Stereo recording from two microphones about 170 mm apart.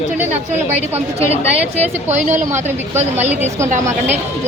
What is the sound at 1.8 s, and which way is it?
Speech, 45° right (ahead or behind).